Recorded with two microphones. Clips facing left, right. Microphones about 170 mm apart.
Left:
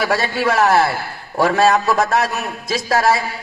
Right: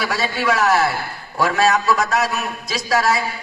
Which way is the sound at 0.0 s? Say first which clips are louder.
Left 3 dB; 60° left (ahead or behind).